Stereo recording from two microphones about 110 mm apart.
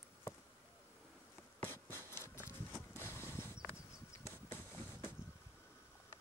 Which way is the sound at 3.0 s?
25° left (ahead or behind).